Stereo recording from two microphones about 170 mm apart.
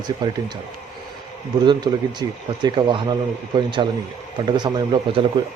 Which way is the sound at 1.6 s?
25° right (ahead or behind).